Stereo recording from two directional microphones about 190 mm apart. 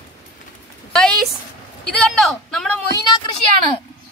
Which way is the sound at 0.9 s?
5° left (ahead or behind).